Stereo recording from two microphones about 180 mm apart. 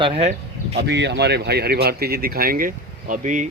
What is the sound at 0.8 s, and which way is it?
Speech, 70° right (ahead or behind).